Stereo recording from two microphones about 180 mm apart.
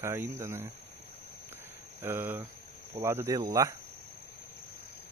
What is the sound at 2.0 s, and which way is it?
Speech, 10° right (ahead or behind).